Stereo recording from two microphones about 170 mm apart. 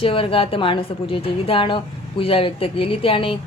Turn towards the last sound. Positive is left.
turn(degrees=30)  # may be behind; listen again after turning